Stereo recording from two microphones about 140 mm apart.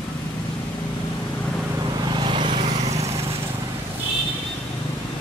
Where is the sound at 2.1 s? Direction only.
35° right (ahead or behind).